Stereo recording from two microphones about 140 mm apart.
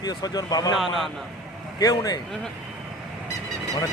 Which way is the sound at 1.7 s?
25° left (ahead or behind).